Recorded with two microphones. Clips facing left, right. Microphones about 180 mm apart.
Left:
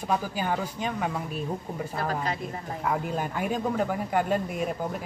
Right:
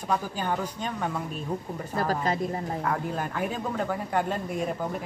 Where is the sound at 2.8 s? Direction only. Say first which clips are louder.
Left 5 dB; 10° left (ahead or behind).